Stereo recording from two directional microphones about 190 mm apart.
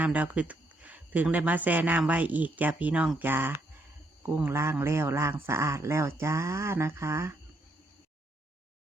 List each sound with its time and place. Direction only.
0.0 s speech: 10° right (ahead or behind)